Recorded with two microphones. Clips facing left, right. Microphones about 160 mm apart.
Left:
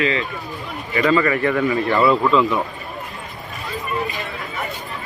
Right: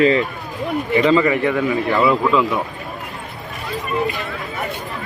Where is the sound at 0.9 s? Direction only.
20° right (ahead or behind).